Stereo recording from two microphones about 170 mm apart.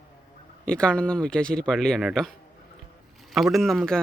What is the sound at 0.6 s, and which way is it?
Speech, 5° left (ahead or behind).